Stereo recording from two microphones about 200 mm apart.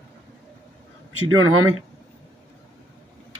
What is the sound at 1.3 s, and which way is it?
Speech, 90° right.